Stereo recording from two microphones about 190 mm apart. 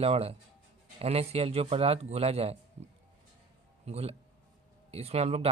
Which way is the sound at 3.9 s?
35° right (ahead or behind).